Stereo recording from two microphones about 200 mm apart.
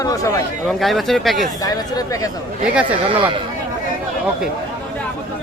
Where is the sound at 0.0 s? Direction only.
15° left (ahead or behind).